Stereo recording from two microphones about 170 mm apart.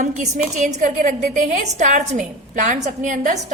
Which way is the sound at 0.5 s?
45° right (ahead or behind).